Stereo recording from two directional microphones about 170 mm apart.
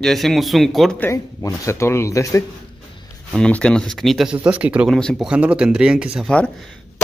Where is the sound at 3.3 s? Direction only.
5° left (ahead or behind).